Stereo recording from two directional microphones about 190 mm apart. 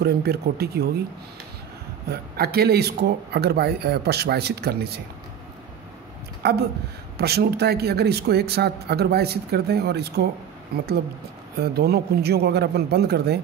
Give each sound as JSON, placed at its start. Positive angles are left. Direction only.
{"t": 0.0, "sound": "speech", "side_deg": -55}
{"t": 2.0, "sound": "speech", "side_deg": -55}
{"t": 6.4, "sound": "speech", "side_deg": -60}
{"t": 11.6, "sound": "speech", "side_deg": -55}